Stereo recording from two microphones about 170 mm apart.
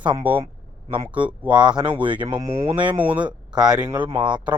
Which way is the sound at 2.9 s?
30° right (ahead or behind).